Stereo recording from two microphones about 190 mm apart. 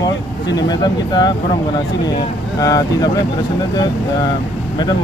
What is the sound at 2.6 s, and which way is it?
Speech, 20° left (ahead or behind).